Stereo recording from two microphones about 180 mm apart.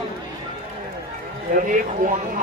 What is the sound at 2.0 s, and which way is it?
Speech, 50° right (ahead or behind).